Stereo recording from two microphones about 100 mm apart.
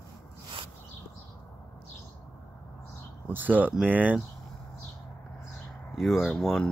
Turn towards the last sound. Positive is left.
turn(degrees=5)  # may be behind; listen again after turning